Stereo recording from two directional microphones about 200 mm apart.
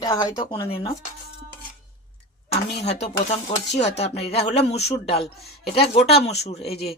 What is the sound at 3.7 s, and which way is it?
Speech, 60° left (ahead or behind).